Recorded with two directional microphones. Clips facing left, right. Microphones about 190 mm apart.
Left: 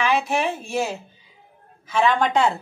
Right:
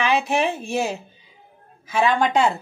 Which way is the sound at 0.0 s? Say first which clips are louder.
Right 1 dB; 20° right (ahead or behind).